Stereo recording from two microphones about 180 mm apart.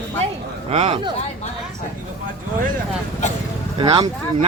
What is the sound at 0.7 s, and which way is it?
Speech, 35° right (ahead or behind).